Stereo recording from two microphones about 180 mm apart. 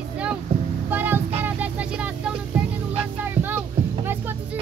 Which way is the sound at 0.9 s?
10° right (ahead or behind).